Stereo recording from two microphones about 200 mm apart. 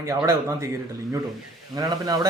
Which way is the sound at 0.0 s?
15° right (ahead or behind).